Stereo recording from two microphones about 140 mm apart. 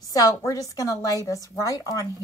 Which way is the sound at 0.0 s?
25° left (ahead or behind).